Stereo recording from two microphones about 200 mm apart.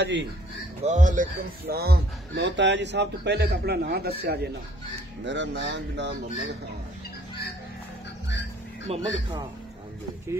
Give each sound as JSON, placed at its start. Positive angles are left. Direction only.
{"t": 0.0, "sound": "speech", "side_deg": -60}
{"t": 0.8, "sound": "speech", "side_deg": -40}
{"t": 8.8, "sound": "speech", "side_deg": -30}